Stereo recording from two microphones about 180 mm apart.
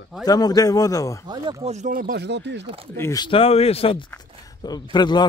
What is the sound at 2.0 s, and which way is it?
Speech, 65° right (ahead or behind).